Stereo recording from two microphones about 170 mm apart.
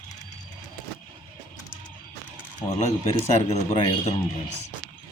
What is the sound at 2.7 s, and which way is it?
A man's voice, 40° left (ahead or behind).